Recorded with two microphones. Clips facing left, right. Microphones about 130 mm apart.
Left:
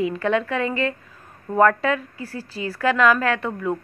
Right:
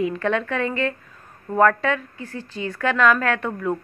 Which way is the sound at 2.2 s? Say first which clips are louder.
Left 1 dB; 35° left (ahead or behind).